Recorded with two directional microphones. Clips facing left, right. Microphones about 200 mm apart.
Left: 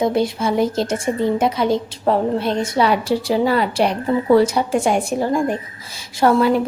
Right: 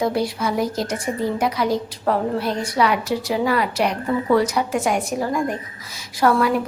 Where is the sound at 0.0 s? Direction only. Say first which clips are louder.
Left 3 dB; 20° left (ahead or behind).